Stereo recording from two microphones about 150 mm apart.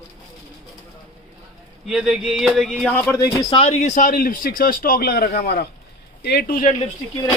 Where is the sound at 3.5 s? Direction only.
40° left (ahead or behind); by 6.7 s 75° left (ahead or behind).